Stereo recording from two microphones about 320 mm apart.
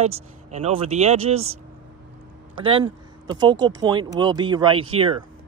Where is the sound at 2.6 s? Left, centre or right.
Centre.